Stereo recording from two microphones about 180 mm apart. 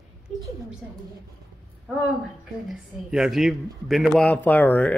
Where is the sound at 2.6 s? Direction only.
5° right (ahead or behind).